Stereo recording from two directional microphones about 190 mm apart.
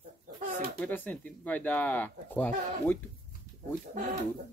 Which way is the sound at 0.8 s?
10° left (ahead or behind).